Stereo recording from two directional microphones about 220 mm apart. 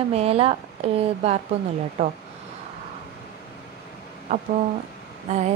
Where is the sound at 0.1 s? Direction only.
25° right (ahead or behind).